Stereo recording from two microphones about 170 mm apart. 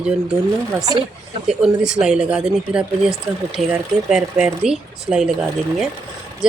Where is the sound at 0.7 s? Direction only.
20° right (ahead or behind).